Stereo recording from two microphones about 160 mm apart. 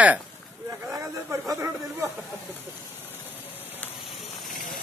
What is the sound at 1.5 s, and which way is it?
Speech, 20° right (ahead or behind).